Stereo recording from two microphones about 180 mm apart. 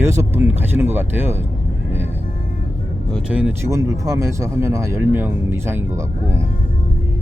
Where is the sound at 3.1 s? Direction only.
Centre (ahead or behind).